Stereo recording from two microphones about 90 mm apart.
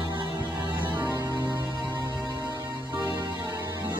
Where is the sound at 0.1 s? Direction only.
60° right (ahead or behind).